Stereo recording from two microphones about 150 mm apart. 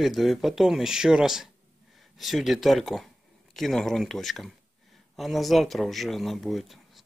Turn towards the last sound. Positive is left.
turn(degrees=0)  # may be behind; listen again after turning